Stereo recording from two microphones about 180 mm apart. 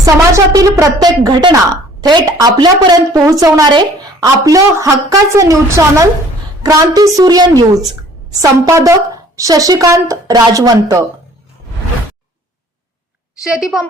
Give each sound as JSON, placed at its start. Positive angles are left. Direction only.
{"t": 0.0, "sound": "a woman's voice", "side_deg": -20}
{"t": 13.4, "sound": "a woman's voice", "side_deg": -5}